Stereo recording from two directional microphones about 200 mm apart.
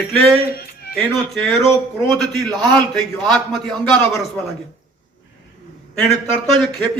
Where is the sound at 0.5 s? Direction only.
50° left (ahead or behind).